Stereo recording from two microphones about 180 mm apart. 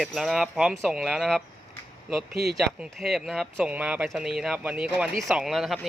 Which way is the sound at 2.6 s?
Centre (ahead or behind).